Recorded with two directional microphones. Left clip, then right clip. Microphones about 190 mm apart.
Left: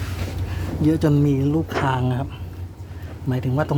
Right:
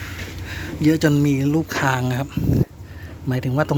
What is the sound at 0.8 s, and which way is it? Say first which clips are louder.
A man's voice: right 2 dB; 10° right (ahead or behind).